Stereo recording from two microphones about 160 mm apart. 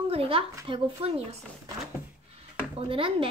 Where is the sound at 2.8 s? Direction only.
35° right (ahead or behind).